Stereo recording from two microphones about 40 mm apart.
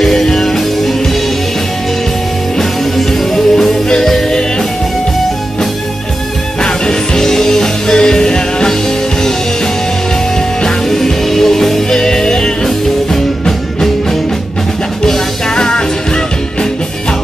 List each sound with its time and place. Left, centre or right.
0.0 s music: centre
3.0 s music: centre
6.6 s music: centre
10.6 s music: centre
15.0 s music: centre